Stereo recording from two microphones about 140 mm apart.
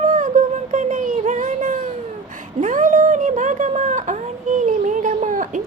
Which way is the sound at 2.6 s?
70° right (ahead or behind).